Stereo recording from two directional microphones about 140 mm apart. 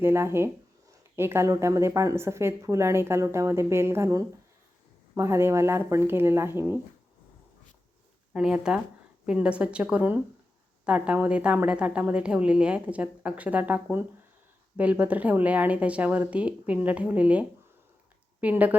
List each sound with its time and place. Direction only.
0.0 s a woman's voice: 20° right (ahead or behind)
8.3 s a woman's voice: 5° right (ahead or behind)